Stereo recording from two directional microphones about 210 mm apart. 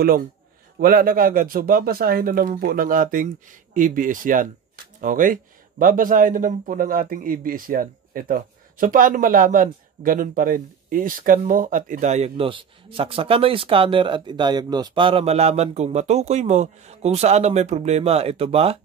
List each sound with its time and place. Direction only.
0.7 s speech: 45° right (ahead or behind); by 18.8 s 30° right (ahead or behind)